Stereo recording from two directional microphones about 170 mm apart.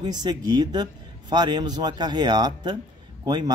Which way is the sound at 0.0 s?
25° right (ahead or behind).